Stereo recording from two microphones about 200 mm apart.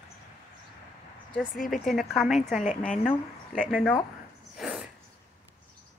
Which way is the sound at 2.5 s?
40° left (ahead or behind).